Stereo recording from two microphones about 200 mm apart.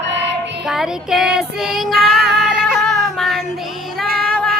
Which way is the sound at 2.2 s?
50° right (ahead or behind).